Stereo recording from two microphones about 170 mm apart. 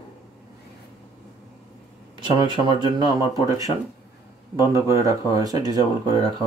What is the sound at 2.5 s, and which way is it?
Speech, 25° right (ahead or behind).